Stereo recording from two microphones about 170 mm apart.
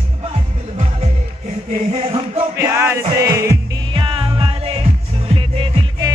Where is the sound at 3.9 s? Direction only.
30° right (ahead or behind).